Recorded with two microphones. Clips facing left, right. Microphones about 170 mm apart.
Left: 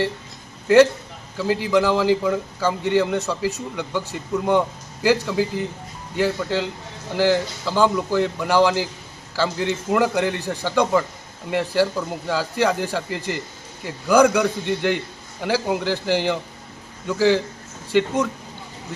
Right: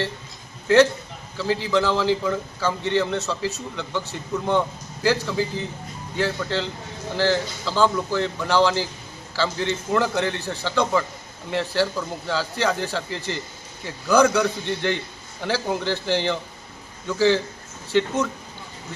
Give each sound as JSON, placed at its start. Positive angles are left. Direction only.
{"t": 1.4, "sound": "a man's voice", "side_deg": 15}